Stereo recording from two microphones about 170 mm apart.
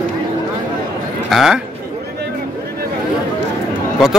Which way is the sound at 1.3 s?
Centre (ahead or behind).